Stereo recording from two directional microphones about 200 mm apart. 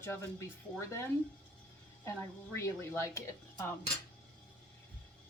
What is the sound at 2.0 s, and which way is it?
A woman's voice, 15° left (ahead or behind).